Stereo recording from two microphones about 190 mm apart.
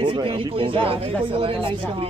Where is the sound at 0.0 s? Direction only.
25° right (ahead or behind).